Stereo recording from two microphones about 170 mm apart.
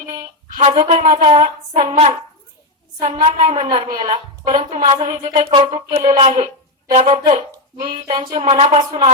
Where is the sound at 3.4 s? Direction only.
50° right (ahead or behind).